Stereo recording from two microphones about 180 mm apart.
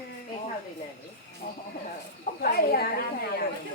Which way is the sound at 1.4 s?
55° left (ahead or behind).